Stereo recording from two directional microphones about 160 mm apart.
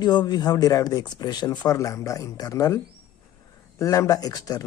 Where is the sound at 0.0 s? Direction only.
25° left (ahead or behind).